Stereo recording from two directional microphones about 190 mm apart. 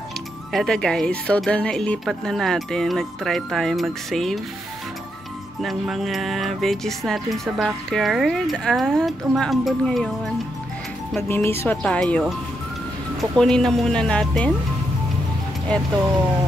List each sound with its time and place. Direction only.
0.5 s music: centre (ahead or behind)
5.6 s music: centre (ahead or behind)
11.1 s speech: 10° left (ahead or behind)
13.2 s music: 5° left (ahead or behind)
15.7 s music: 5° left (ahead or behind)